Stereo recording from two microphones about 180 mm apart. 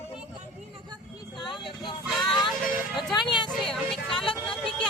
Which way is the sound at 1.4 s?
25° left (ahead or behind).